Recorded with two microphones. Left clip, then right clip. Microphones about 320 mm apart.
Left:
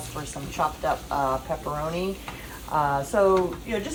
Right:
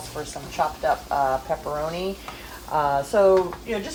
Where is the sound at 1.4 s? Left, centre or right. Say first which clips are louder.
Right 3 dB; right.